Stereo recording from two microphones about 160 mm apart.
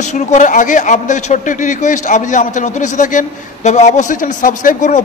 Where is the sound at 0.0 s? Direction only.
50° left (ahead or behind).